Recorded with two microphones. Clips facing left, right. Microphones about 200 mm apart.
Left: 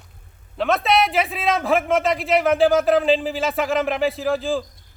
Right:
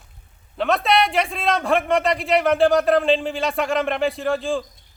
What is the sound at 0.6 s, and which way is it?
A man's voice, centre (ahead or behind).